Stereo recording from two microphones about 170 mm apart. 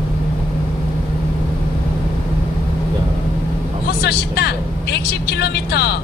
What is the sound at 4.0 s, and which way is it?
Speech, 70° left (ahead or behind).